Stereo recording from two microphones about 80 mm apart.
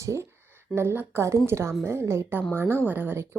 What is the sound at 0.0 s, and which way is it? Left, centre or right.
A woman's voice, right.